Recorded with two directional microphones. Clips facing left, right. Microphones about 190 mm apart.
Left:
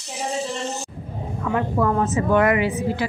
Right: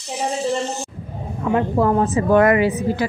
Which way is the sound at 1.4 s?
25° right (ahead or behind).